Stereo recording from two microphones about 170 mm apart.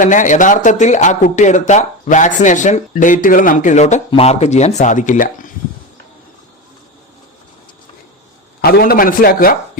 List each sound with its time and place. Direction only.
0.0 s speech: 50° left (ahead or behind)
8.6 s a man's voice: 65° left (ahead or behind)